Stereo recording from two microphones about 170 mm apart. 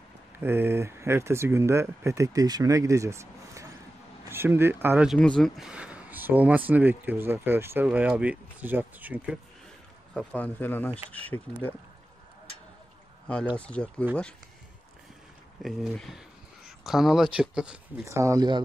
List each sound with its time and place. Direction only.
0.4 s speech: 15° right (ahead or behind)
10.1 s a man's voice: 10° left (ahead or behind)
13.6 s a man's voice: 5° left (ahead or behind)
15.6 s speech: centre (ahead or behind)
18.0 s speech: 15° right (ahead or behind)